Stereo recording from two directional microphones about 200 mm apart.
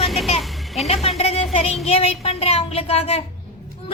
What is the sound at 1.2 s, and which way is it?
A child's voice, 30° left (ahead or behind).